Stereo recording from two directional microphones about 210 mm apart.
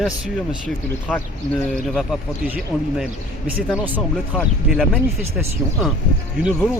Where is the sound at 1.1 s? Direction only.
10° left (ahead or behind).